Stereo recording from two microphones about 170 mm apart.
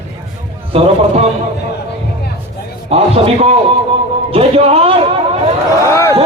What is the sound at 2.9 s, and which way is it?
A man's voice, 35° right (ahead or behind).